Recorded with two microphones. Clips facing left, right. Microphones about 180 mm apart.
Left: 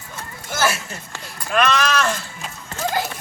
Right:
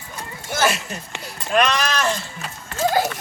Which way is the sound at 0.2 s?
15° right (ahead or behind).